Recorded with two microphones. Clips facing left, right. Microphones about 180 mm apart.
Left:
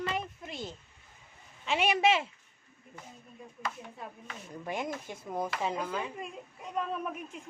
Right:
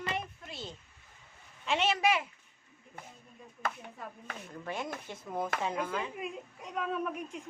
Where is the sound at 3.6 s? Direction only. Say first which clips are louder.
Right 2 dB; 50° right (ahead or behind).